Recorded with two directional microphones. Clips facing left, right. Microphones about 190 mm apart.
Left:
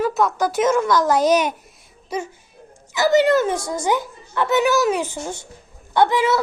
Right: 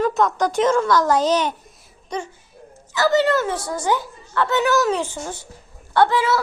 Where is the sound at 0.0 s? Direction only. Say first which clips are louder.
Even; 5° left (ahead or behind).